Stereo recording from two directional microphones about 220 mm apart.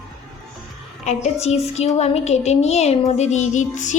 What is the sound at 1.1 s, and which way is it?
Speech, 35° left (ahead or behind).